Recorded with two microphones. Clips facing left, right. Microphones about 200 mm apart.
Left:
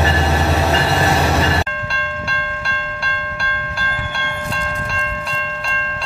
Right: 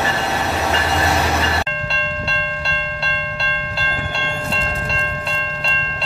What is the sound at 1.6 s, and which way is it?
Train, 25° right (ahead or behind).